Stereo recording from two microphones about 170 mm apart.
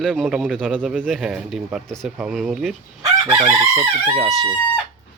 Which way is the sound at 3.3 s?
35° right (ahead or behind).